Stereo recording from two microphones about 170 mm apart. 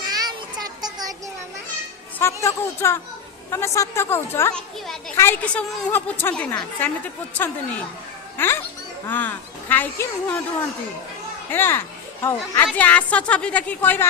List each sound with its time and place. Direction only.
0.1 s child singing: 25° right (ahead or behind)
2.1 s a woman's voice: 15° left (ahead or behind)
4.5 s children playing: 5° left (ahead or behind)
5.1 s a woman's voice: 15° left (ahead or behind)
11.5 s a woman's voice: 15° left (ahead or behind)